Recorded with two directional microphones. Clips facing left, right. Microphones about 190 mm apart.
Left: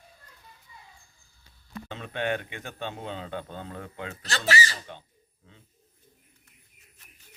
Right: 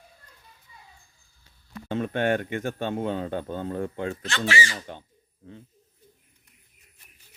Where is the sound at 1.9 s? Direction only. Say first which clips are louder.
Right 6 dB; 50° right (ahead or behind).